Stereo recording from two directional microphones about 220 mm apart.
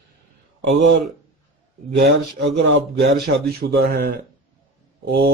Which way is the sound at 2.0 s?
50° right (ahead or behind).